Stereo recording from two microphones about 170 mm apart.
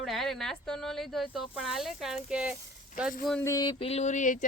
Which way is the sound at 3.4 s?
20° left (ahead or behind).